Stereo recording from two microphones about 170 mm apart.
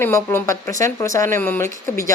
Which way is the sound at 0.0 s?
15° left (ahead or behind).